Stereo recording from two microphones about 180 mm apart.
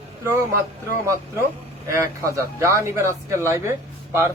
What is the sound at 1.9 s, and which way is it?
Speech, 15° right (ahead or behind).